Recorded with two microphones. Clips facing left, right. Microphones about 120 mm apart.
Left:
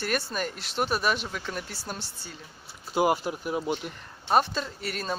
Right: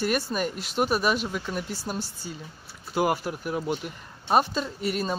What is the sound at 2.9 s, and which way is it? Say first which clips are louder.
Speech: left 1 dB; 20° left (ahead or behind).